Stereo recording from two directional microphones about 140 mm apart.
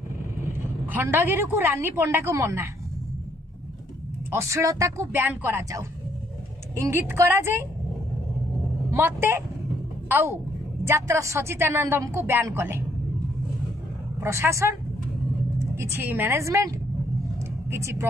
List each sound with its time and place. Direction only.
0.5 s a woman's voice: 15° right (ahead or behind)
4.3 s a woman's voice: 20° right (ahead or behind)
8.9 s a woman's voice: 15° right (ahead or behind)
14.2 s a woman's voice: 20° right (ahead or behind)